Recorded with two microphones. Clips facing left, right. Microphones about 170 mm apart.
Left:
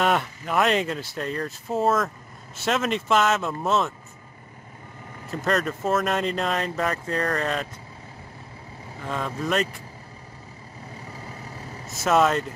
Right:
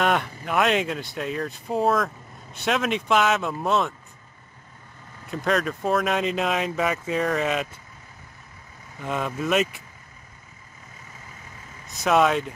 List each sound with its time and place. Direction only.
0.0 s speech: centre (ahead or behind)
5.3 s speech: centre (ahead or behind)
9.0 s speech: 10° right (ahead or behind)
11.1 s vehicle: 35° left (ahead or behind)
11.9 s speech: centre (ahead or behind)